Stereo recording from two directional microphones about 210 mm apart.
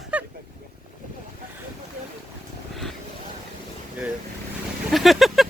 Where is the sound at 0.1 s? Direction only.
5° right (ahead or behind).